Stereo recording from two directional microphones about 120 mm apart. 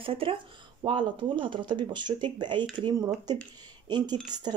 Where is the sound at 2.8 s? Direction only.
30° right (ahead or behind).